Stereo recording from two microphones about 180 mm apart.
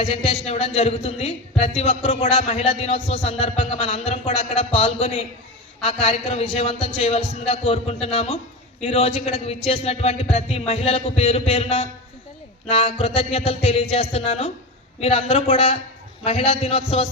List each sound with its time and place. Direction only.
0.0 s a man's voice: 35° left (ahead or behind)